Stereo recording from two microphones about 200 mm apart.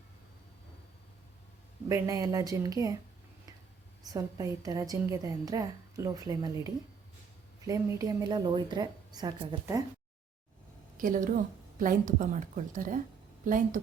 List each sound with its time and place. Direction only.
1.9 s a woman's voice: 15° right (ahead or behind)
4.0 s a woman's voice: 20° right (ahead or behind)
10.9 s a woman's voice: 40° right (ahead or behind)